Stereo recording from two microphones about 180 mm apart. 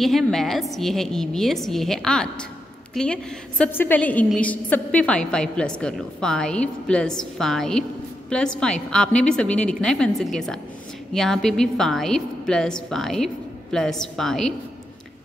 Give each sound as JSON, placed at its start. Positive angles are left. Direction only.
{"t": 0.0, "sound": "a woman's voice", "side_deg": 0}